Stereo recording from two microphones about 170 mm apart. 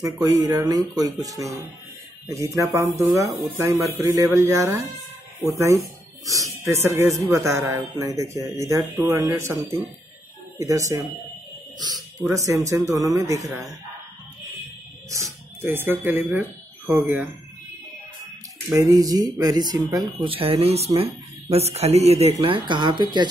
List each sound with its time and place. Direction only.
0.0 s speech: 20° right (ahead or behind)
6.2 s speech: 20° right (ahead or behind)
10.6 s speech: 20° right (ahead or behind)
15.0 s speech: 20° right (ahead or behind)
18.7 s speech: 20° right (ahead or behind)
20.2 s speech: 35° right (ahead or behind)